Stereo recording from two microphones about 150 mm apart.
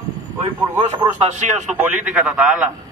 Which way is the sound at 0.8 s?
25° right (ahead or behind).